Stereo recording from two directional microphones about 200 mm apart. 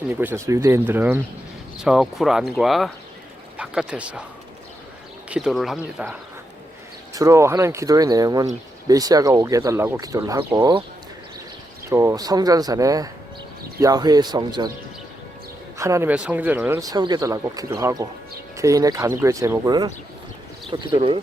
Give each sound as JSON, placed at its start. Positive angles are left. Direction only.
{"t": 0.1, "sound": "speech", "side_deg": -10}
{"t": 5.3, "sound": "speech", "side_deg": 0}
{"t": 7.1, "sound": "speech", "side_deg": -15}
{"t": 11.9, "sound": "speech", "side_deg": -15}
{"t": 15.8, "sound": "speech", "side_deg": -15}